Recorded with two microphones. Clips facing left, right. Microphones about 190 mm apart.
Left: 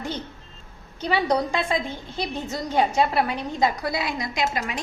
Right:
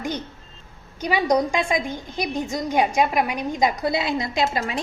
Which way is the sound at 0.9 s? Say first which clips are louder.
Right 2 dB; 15° right (ahead or behind).